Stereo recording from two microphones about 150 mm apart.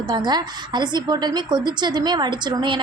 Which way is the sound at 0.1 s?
30° right (ahead or behind).